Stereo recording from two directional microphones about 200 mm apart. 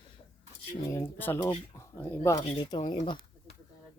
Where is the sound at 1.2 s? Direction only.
10° left (ahead or behind).